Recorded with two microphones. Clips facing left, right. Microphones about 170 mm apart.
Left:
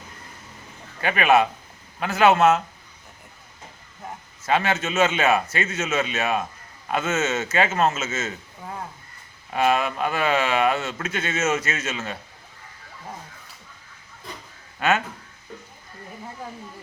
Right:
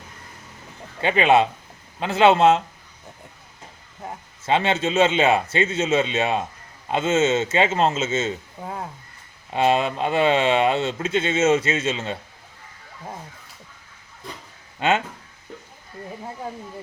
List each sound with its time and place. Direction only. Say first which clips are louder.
1.0 s speech: right 2 dB; 25° right (ahead or behind)
4.4 s speech: right 2 dB; 25° right (ahead or behind)
14.8 s speech: right 1 dB; 25° right (ahead or behind)